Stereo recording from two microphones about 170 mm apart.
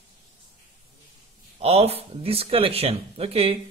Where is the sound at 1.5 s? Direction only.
35° right (ahead or behind).